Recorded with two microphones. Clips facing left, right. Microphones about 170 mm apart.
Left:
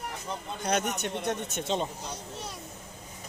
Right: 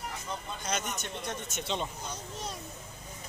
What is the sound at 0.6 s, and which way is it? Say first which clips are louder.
A man's voice: left 9 dB; 65° left (ahead or behind).